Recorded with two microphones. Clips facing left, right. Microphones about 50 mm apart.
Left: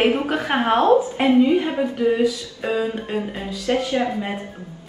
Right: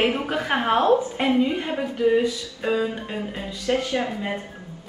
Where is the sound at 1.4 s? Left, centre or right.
Centre.